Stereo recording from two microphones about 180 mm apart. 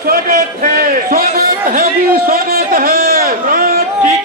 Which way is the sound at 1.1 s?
50° right (ahead or behind).